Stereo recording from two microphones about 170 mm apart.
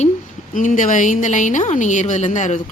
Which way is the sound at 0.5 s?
50° left (ahead or behind).